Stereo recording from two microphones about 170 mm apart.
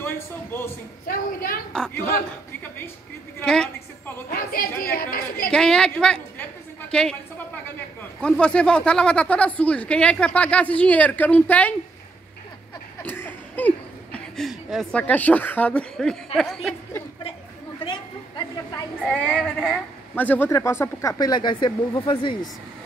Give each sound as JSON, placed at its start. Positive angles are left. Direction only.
{"t": 0.5, "sound": "speech", "side_deg": 15}
{"t": 1.0, "sound": "a woman's voice", "side_deg": 60}
{"t": 1.7, "sound": "a woman's voice", "side_deg": 5}
{"t": 3.3, "sound": "a woman's voice", "side_deg": 5}
{"t": 4.3, "sound": "a woman's voice", "side_deg": 60}
{"t": 5.5, "sound": "a woman's voice", "side_deg": 5}
{"t": 6.9, "sound": "a sound", "side_deg": 5}
{"t": 8.2, "sound": "speech", "side_deg": 5}
{"t": 13.0, "sound": "speech", "side_deg": 10}
{"t": 19.0, "sound": "a woman's voice", "side_deg": 5}
{"t": 20.2, "sound": "speech", "side_deg": 10}